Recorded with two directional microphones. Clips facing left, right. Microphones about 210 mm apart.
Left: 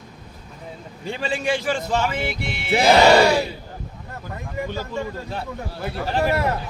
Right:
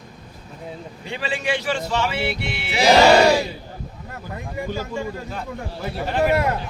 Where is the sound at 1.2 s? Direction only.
45° left (ahead or behind).